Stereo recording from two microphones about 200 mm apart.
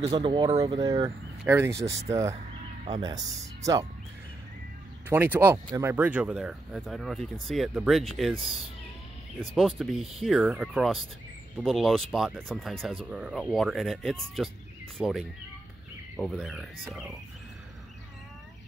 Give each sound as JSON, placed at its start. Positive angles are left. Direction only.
{"t": 0.0, "sound": "speech", "side_deg": -20}
{"t": 5.1, "sound": "speech", "side_deg": -10}
{"t": 9.6, "sound": "speech", "side_deg": 0}